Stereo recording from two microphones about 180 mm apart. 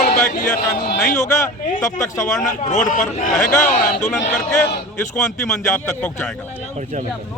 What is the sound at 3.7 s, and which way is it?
Speech, 50° left (ahead or behind).